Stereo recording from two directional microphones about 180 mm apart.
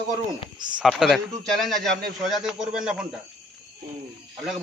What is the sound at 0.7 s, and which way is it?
A man's voice, centre (ahead or behind).